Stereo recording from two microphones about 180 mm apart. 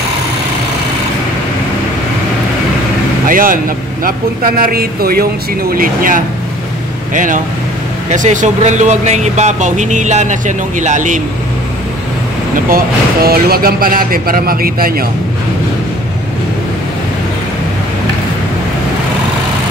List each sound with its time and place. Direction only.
3.3 s speech: 50° right (ahead or behind)
12.6 s speech: 55° right (ahead or behind)